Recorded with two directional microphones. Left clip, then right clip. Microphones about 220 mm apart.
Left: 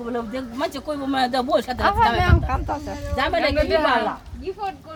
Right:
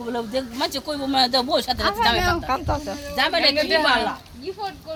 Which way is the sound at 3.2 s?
20° left (ahead or behind).